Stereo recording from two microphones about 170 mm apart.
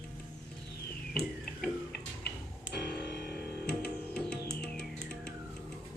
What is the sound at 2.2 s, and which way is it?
Music, 75° left (ahead or behind).